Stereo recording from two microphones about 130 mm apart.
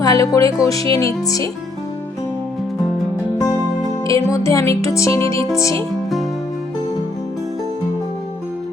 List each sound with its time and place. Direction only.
0.0 s music: 25° left (ahead or behind)
4.0 s music: 25° left (ahead or behind)